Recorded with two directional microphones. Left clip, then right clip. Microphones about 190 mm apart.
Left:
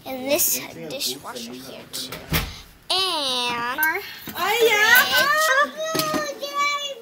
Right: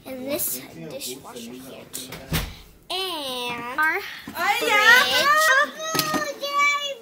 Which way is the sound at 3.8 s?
30° right (ahead or behind).